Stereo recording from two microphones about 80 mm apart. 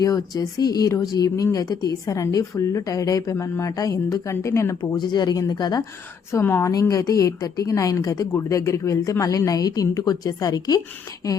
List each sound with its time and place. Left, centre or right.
0.0 s a woman's voice: left
4.8 s speech: left
6.4 s a woman's voice: left
6.7 s a woman's voice: left
8.3 s a woman's voice: left